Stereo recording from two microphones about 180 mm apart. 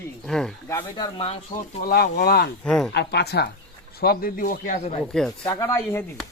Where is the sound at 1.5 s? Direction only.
55° left (ahead or behind).